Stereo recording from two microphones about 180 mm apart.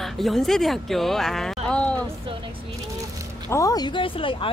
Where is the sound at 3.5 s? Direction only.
15° left (ahead or behind).